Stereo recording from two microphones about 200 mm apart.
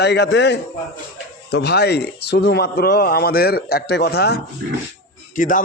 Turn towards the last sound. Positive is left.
turn(degrees=40)  # may be behind; listen again after turning